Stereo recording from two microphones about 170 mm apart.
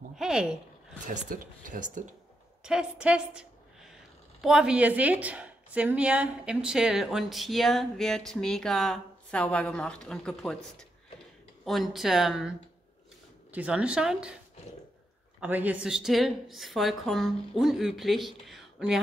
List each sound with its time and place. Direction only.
0.1 s speech: 5° right (ahead or behind)
1.0 s speech: 50° right (ahead or behind)
2.6 s a woman's voice: 5° right (ahead or behind)
15.4 s a woman's voice: 10° right (ahead or behind)